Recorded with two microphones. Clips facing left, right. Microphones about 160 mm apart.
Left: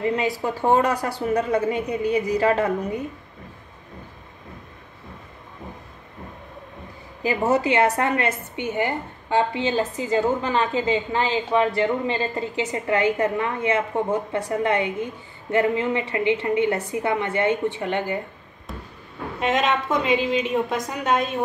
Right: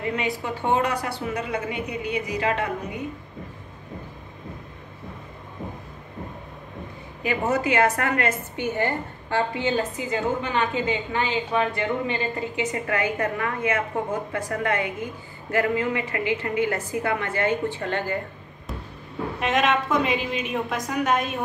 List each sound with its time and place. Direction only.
0.0 s a woman's voice: 35° left (ahead or behind)
7.2 s a woman's voice: 30° left (ahead or behind)
10.0 s a woman's voice: 35° left (ahead or behind); by 18.2 s 20° left (ahead or behind)
19.4 s a woman's voice: 25° left (ahead or behind)